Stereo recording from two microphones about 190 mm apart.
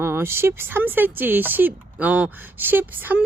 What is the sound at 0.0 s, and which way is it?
Speech, 10° right (ahead or behind).